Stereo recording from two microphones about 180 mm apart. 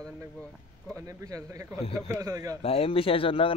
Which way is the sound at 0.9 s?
20° right (ahead or behind).